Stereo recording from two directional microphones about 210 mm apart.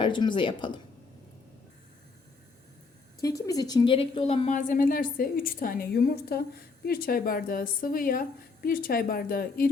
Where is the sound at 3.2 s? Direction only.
15° left (ahead or behind).